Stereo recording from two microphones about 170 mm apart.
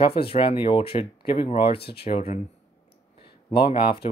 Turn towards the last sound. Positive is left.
turn(degrees=30)  # may be behind; listen again after turning